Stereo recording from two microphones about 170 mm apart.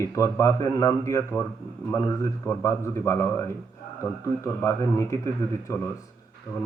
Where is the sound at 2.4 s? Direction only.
15° left (ahead or behind).